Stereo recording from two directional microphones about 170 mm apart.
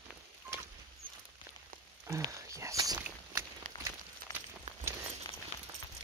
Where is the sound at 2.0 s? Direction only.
15° right (ahead or behind).